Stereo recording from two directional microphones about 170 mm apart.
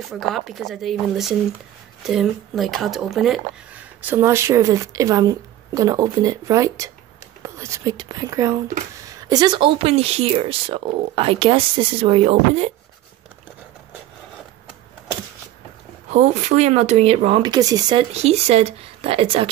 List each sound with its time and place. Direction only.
0.0 s speech: centre (ahead or behind)
4.0 s speech: 15° right (ahead or behind); by 12.7 s 35° right (ahead or behind)
16.1 s speech: 40° right (ahead or behind); by 18.0 s 25° right (ahead or behind)
18.1 s speech: 40° right (ahead or behind)